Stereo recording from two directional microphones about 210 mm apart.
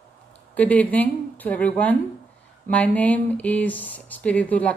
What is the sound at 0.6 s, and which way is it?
A woman's voice, 5° left (ahead or behind).